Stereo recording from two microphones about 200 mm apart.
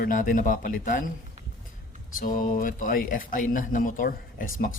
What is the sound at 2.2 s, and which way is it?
Speech, 40° left (ahead or behind).